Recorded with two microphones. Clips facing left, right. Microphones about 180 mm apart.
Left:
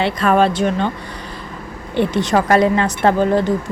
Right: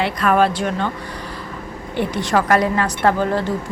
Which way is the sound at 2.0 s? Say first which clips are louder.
Left 3 dB; 25° left (ahead or behind).